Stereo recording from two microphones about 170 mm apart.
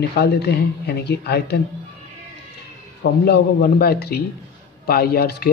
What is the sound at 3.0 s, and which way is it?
Speech, 65° left (ahead or behind).